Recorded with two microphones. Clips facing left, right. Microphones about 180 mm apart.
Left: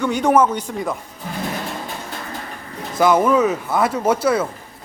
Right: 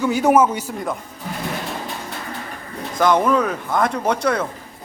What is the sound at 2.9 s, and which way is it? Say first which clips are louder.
Speech: left 2 dB; 5° left (ahead or behind).